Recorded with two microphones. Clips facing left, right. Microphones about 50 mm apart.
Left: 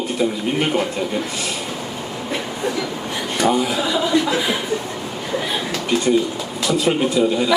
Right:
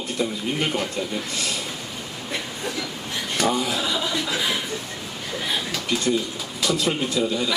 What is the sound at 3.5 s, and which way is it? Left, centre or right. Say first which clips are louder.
Speech: left 5 dB; centre.